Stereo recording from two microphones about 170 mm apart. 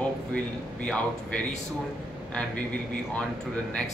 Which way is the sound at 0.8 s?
5° left (ahead or behind).